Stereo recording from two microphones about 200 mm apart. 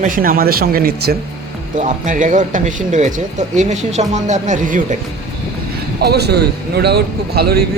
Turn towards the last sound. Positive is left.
turn(degrees=-50)  # may be behind; listen again after turning